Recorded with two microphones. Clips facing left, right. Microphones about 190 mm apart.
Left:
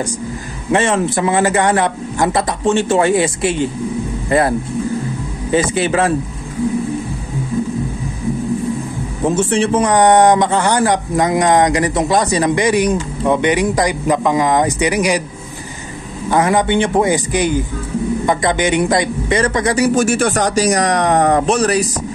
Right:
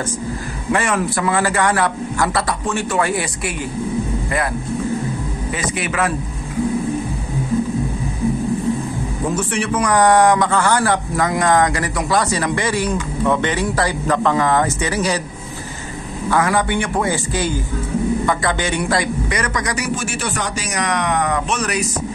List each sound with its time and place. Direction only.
0.7 s speech: 25° left (ahead or behind)
9.3 s speech: 25° left (ahead or behind)
16.3 s speech: 20° left (ahead or behind)
20.1 s speech: 45° left (ahead or behind)